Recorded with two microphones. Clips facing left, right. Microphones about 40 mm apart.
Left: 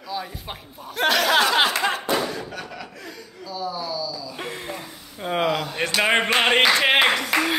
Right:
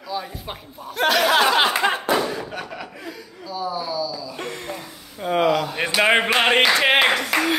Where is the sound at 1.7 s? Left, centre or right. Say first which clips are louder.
Right 3 dB; centre.